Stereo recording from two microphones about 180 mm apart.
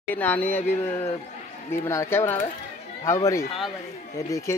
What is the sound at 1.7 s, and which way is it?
Speech, 15° left (ahead or behind).